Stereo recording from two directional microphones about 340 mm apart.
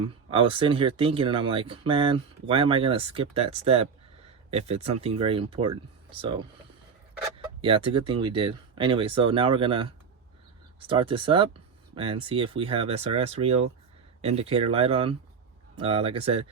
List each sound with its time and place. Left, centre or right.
0.3 s speech: centre
7.6 s speech: centre